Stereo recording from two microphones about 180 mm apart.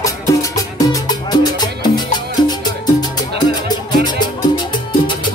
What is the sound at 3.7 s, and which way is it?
Music, 25° left (ahead or behind).